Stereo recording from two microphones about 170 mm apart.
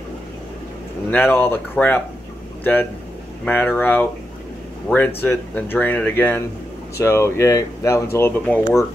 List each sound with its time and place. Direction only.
1.1 s speech: 10° left (ahead or behind)